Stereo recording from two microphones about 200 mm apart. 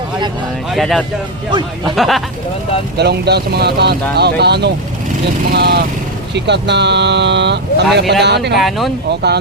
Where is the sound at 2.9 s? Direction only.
55° right (ahead or behind).